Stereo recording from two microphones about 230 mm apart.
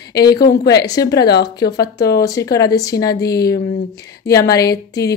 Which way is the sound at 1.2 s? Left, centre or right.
Left.